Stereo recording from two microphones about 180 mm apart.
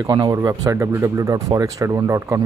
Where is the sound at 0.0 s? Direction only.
20° right (ahead or behind).